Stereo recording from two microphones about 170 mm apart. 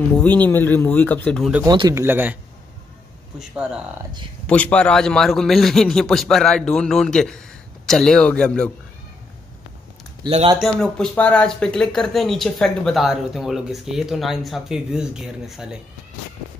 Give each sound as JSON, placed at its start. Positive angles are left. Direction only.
{"t": 0.2, "sound": "speech", "side_deg": 10}
{"t": 1.6, "sound": "speech", "side_deg": -25}
{"t": 3.3, "sound": "speech", "side_deg": -5}
{"t": 4.5, "sound": "speech", "side_deg": 10}
{"t": 10.2, "sound": "speech", "side_deg": -30}
{"t": 10.6, "sound": "speech", "side_deg": 5}